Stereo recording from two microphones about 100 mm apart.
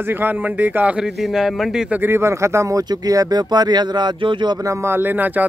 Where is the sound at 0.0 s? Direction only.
20° right (ahead or behind); by 1.9 s 5° right (ahead or behind).